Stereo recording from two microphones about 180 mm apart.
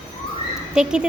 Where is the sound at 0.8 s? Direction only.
5° right (ahead or behind).